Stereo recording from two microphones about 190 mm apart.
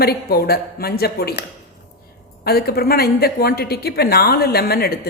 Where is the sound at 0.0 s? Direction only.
55° left (ahead or behind).